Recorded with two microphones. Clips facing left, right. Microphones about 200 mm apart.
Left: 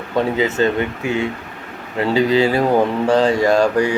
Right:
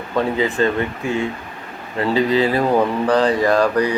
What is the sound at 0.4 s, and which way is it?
Speech, 25° left (ahead or behind).